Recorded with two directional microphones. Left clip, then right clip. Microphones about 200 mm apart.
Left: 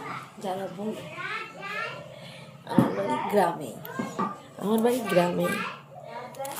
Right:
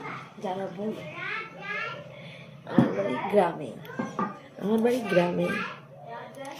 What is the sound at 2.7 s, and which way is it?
A woman's voice, centre (ahead or behind).